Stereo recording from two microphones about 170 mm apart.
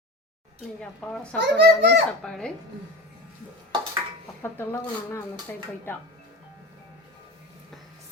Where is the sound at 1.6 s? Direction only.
90° right.